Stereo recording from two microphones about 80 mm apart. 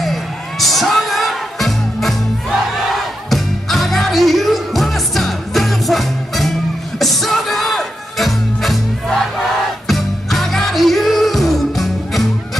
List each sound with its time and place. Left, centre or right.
0.0 s music: centre